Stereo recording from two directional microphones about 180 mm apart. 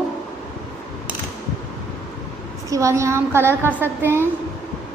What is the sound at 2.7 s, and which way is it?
A woman's voice, 15° right (ahead or behind).